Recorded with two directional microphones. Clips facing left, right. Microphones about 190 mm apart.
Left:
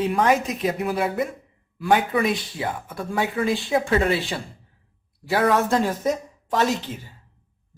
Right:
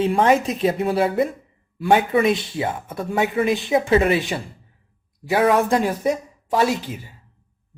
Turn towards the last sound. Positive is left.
turn(degrees=-10)  # may be behind; listen again after turning